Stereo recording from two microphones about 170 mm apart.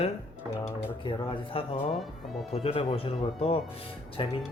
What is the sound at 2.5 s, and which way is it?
Speech, 35° left (ahead or behind).